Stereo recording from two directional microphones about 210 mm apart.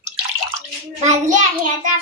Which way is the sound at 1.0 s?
35° right (ahead or behind).